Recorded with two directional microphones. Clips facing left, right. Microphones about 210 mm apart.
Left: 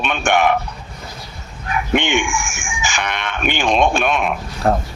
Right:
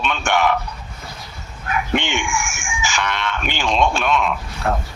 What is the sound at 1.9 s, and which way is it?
Speech, 15° left (ahead or behind).